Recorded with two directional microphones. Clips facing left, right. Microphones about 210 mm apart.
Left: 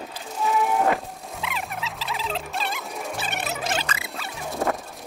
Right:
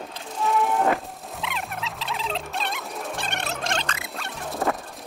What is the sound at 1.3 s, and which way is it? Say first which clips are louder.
Rodents: even; centre (ahead or behind).